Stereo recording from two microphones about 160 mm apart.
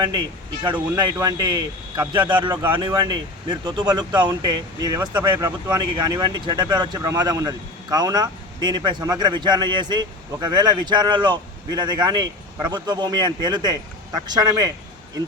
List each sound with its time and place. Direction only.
0.6 s speech: 25° right (ahead or behind)